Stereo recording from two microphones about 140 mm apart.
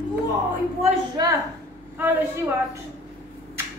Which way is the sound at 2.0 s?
15° right (ahead or behind).